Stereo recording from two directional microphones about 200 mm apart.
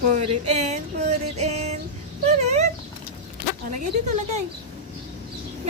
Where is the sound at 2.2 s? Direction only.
35° right (ahead or behind).